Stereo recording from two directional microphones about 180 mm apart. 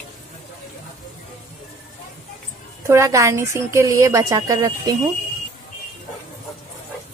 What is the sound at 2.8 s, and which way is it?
A woman's voice, 15° right (ahead or behind).